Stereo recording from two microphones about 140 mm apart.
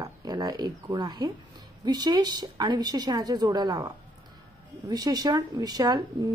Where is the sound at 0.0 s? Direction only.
25° right (ahead or behind).